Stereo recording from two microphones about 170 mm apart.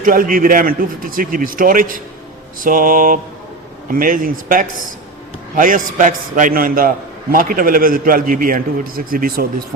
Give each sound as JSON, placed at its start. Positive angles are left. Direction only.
{"t": 0.0, "sound": "a man's voice", "side_deg": -55}
{"t": 2.6, "sound": "mantra", "side_deg": -55}
{"t": 3.8, "sound": "a man's voice", "side_deg": -55}